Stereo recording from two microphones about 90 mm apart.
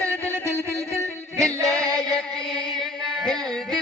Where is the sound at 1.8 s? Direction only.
10° left (ahead or behind).